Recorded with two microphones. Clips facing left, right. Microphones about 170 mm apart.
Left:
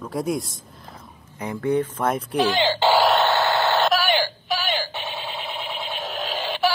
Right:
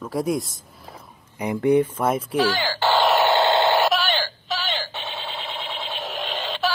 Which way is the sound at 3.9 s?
10° left (ahead or behind).